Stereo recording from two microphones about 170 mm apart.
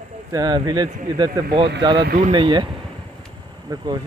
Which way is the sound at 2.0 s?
65° right (ahead or behind).